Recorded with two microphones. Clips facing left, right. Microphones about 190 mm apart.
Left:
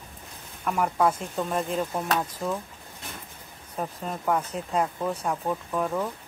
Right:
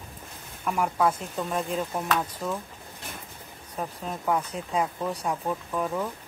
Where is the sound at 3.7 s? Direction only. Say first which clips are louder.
Left 1 dB; 5° left (ahead or behind).